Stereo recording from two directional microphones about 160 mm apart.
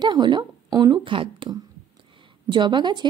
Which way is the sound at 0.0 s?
30° right (ahead or behind).